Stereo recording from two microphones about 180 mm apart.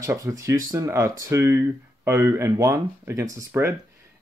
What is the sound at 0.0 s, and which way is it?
Speech, 20° right (ahead or behind).